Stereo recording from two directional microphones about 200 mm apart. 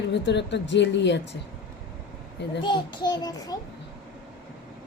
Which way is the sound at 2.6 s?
25° left (ahead or behind).